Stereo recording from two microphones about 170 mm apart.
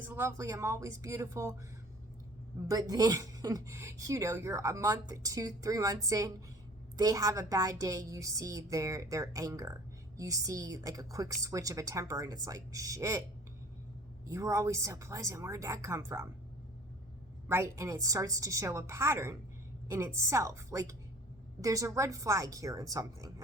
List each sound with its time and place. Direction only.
0.1 s a woman's voice: 15° right (ahead or behind)
2.6 s a woman's voice: 20° right (ahead or behind)
14.3 s a woman's voice: 15° right (ahead or behind)
17.5 s a woman's voice: 15° right (ahead or behind)